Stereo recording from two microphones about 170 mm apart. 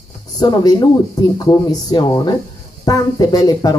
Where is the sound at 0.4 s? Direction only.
25° left (ahead or behind).